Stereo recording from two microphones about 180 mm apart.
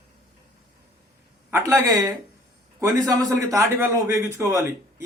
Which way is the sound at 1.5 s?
15° right (ahead or behind).